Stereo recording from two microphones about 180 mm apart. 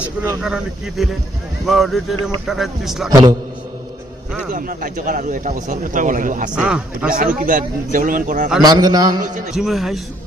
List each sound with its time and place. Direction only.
0.4 s a man's voice: centre (ahead or behind)
3.1 s a man's voice: 20° right (ahead or behind)
4.5 s speech: 50° right (ahead or behind)
6.6 s a man's voice: 5° right (ahead or behind)
7.1 s speech: 50° right (ahead or behind)
8.6 s a man's voice: 20° right (ahead or behind)
9.5 s a man's voice: centre (ahead or behind)